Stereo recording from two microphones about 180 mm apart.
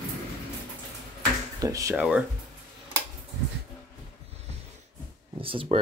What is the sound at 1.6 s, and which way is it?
Speech, 20° right (ahead or behind).